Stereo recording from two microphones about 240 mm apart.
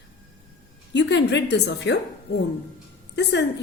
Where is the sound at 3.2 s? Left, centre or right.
Left.